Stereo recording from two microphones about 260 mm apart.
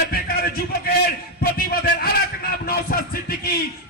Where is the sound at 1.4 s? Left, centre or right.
Left.